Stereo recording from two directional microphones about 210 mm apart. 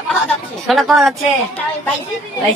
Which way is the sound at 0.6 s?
Centre (ahead or behind).